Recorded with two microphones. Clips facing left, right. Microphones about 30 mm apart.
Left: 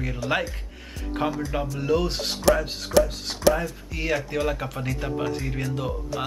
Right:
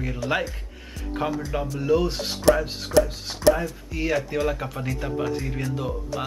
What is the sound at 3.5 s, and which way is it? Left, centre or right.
Speech, centre.